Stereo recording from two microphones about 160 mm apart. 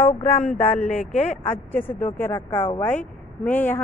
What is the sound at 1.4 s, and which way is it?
A woman's voice, 15° left (ahead or behind).